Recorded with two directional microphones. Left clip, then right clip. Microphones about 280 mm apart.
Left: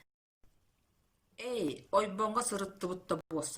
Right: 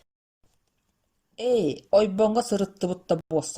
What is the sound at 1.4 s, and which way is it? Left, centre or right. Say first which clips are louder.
Speech: right 13 dB; centre.